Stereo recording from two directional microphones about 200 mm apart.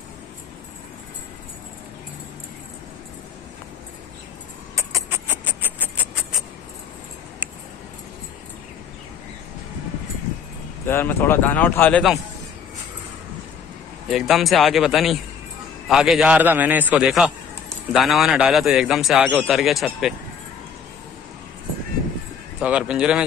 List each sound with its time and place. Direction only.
4.7 s rodents: 15° right (ahead or behind)
10.9 s speech: 10° left (ahead or behind)
14.0 s a man's voice: centre (ahead or behind)
22.6 s a man's voice: 5° right (ahead or behind)